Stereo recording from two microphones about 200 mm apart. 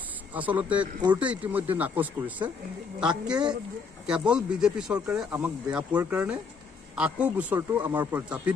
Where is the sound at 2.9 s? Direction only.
5° right (ahead or behind).